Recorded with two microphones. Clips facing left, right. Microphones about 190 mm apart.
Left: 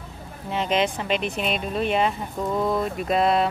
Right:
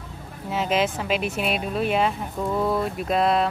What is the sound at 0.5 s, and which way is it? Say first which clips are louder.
Speech: even; 5° right (ahead or behind).